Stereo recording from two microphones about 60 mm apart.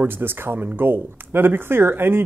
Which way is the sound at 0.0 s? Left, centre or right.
Right.